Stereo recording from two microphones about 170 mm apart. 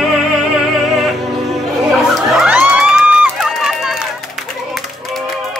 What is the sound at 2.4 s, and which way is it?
Crowd, 5° right (ahead or behind).